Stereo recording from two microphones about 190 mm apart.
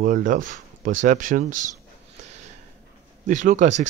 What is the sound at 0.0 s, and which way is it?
Speech, 45° right (ahead or behind).